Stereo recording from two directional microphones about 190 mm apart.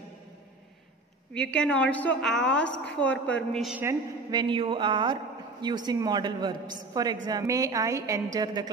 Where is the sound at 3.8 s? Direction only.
20° right (ahead or behind).